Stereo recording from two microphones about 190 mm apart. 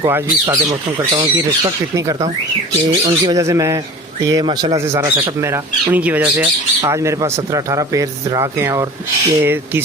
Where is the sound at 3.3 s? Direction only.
15° right (ahead or behind).